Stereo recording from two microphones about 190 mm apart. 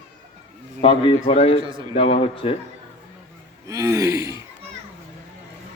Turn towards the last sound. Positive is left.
turn(degrees=-15)  # may be behind; listen again after turning